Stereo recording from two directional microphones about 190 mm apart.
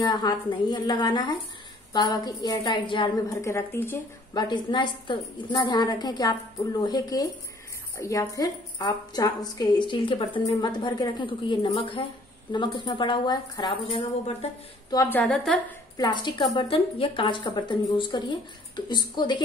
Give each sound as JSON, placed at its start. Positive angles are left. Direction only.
{"t": 0.0, "sound": "a woman's voice", "side_deg": 20}
{"t": 14.9, "sound": "a woman's voice", "side_deg": 15}
{"t": 16.0, "sound": "a woman's voice", "side_deg": 25}